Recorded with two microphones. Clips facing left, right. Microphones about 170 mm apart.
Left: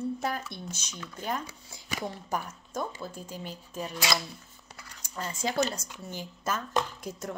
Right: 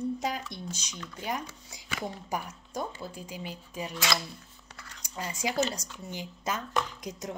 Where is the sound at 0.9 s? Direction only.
5° left (ahead or behind).